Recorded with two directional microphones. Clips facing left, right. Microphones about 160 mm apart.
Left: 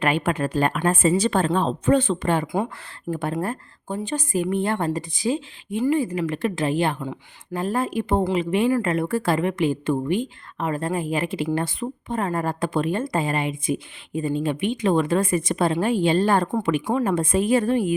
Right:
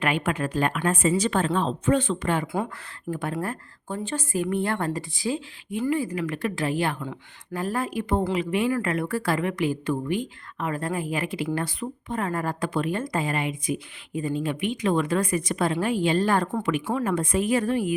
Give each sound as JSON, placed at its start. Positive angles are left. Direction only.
{"t": 0.0, "sound": "a woman's voice", "side_deg": 35}
{"t": 3.9, "sound": "speech", "side_deg": 15}